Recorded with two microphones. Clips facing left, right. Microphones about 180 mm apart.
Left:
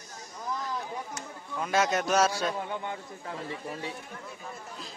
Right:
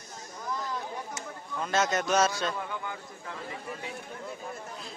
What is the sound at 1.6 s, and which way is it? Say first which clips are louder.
Speech: left 1 dB; 10° left (ahead or behind).